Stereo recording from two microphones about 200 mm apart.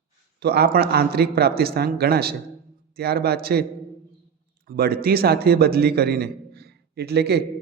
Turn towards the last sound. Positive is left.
turn(degrees=-55)  # may be behind; listen again after turning